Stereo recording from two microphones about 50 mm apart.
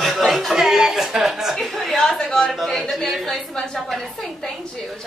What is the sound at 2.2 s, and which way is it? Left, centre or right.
A woman's voice, centre.